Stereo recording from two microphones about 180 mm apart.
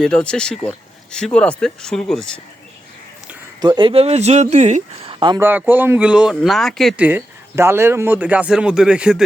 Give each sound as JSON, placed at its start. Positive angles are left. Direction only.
{"t": 0.0, "sound": "speech", "side_deg": 5}
{"t": 3.6, "sound": "speech", "side_deg": -25}
{"t": 5.4, "sound": "speech", "side_deg": -10}